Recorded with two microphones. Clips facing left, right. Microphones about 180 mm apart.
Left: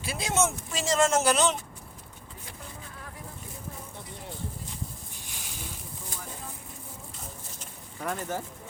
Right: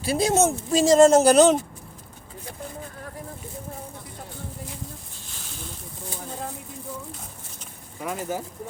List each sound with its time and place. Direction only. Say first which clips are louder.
0.0 s speech: right 7 dB; 35° right (ahead or behind)
5.3 s snake: right 3 dB; 15° left (ahead or behind)
8.0 s speech: right 3 dB; 5° right (ahead or behind)